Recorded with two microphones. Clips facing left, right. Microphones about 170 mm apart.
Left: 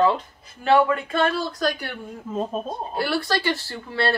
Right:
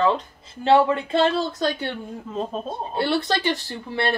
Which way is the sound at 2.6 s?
25° right (ahead or behind).